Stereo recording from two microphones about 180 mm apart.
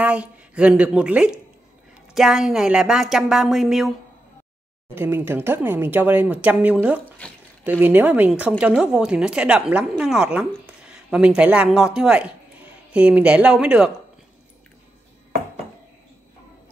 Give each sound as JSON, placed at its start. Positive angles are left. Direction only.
{"t": 0.0, "sound": "a woman's voice", "side_deg": -5}
{"t": 4.9, "sound": "speech", "side_deg": -10}
{"t": 7.2, "sound": "speech", "side_deg": 5}
{"t": 7.8, "sound": "a woman's voice", "side_deg": -10}